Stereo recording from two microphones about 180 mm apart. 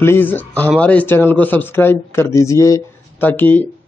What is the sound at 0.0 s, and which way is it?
Speech, 10° left (ahead or behind).